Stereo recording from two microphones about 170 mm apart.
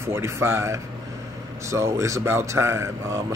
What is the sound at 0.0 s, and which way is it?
Speech, 15° right (ahead or behind).